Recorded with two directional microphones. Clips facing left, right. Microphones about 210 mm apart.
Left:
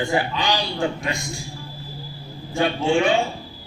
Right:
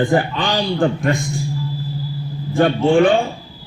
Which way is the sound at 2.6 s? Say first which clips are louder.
Right 7 dB; 55° right (ahead or behind).